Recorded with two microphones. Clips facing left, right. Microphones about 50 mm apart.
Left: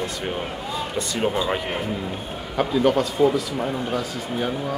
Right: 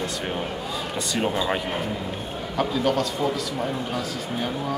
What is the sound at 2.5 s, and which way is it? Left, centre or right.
Speech, centre.